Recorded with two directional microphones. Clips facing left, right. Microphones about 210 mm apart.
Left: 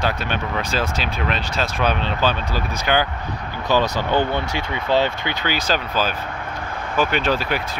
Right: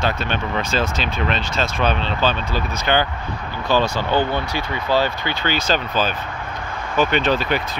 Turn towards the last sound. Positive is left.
turn(degrees=5)  # may be behind; listen again after turning